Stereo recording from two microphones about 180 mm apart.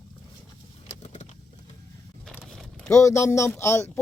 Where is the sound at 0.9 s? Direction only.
40° left (ahead or behind).